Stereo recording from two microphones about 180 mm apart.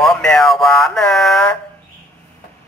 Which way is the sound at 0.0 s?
Centre (ahead or behind).